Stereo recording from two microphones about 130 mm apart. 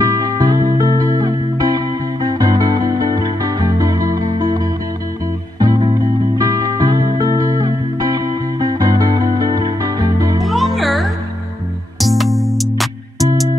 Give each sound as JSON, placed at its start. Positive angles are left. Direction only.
{"t": 0.0, "sound": "music", "side_deg": -30}
{"t": 10.4, "sound": "music", "side_deg": 0}